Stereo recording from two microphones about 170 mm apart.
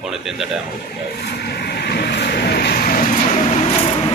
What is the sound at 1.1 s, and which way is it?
Vehicle, 75° left (ahead or behind).